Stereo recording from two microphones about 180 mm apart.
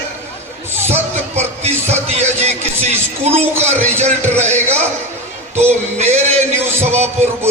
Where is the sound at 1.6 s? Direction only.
35° right (ahead or behind).